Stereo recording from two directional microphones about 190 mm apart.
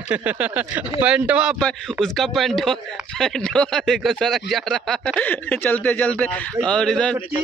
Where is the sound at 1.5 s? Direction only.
5° left (ahead or behind).